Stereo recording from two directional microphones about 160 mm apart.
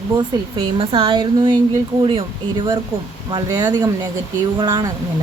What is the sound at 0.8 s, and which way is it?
Speech, 35° right (ahead or behind).